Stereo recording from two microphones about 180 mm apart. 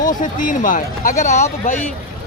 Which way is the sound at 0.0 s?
45° left (ahead or behind).